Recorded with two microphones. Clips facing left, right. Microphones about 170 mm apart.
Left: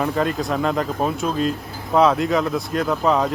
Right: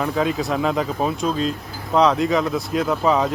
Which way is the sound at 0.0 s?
Centre (ahead or behind).